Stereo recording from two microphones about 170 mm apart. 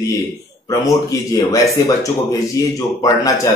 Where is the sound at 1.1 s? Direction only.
20° left (ahead or behind).